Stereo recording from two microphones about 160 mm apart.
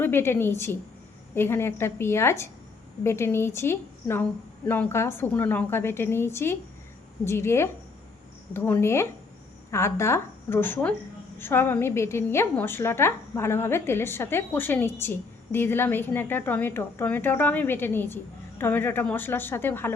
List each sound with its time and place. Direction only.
0.0 s a woman's voice: 15° left (ahead or behind)